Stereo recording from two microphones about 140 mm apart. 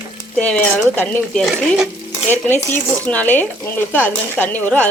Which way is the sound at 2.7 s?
10° left (ahead or behind).